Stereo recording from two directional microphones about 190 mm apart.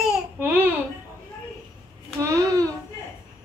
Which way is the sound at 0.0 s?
10° right (ahead or behind).